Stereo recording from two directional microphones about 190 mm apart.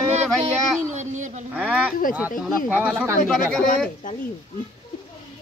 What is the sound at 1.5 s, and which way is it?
Speech, 5° right (ahead or behind).